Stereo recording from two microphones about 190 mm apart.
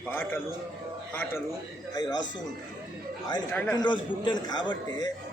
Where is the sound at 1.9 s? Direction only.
20° left (ahead or behind).